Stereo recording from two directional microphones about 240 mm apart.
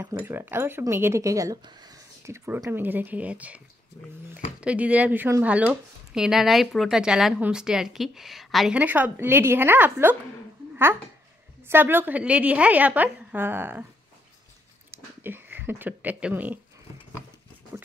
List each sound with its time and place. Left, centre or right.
0.0 s speech: centre
11.6 s speech: centre
14.9 s speech: centre
17.7 s a sound: centre